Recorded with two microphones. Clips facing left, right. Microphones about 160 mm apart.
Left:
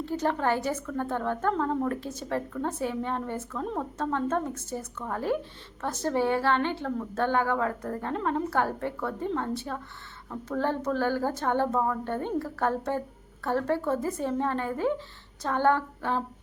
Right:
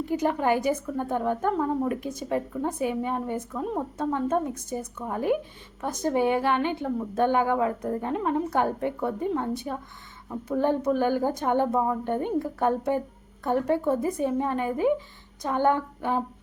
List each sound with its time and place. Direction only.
0.0 s a woman's voice: 15° right (ahead or behind)